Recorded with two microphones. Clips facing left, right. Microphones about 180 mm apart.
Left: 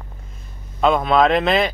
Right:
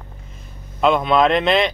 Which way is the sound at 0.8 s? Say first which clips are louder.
Even; centre (ahead or behind).